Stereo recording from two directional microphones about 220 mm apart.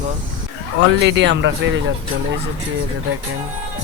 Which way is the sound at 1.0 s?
55° right (ahead or behind).